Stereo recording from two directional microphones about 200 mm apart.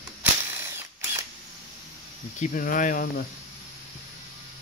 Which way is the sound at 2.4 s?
40° left (ahead or behind).